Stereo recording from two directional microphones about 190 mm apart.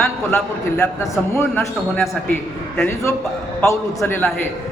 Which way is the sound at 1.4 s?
10° left (ahead or behind).